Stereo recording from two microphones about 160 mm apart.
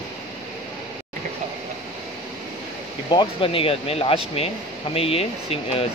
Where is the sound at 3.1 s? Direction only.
35° left (ahead or behind).